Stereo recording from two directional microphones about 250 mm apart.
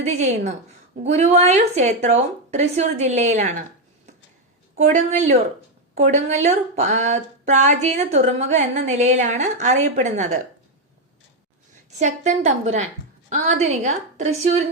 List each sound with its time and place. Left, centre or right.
0.0 s speech: right
4.8 s speech: right
11.9 s speech: right